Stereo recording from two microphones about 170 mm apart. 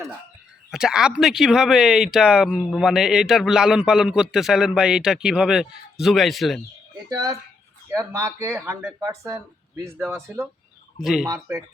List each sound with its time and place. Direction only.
0.7 s speech: 5° right (ahead or behind)
7.1 s speech: 20° right (ahead or behind)
10.9 s speech: centre (ahead or behind)
11.5 s speech: 15° right (ahead or behind)